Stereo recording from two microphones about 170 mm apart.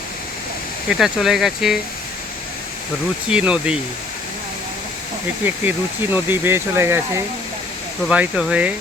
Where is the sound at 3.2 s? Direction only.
5° right (ahead or behind).